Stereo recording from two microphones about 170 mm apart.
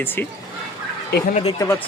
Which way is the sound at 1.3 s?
35° left (ahead or behind).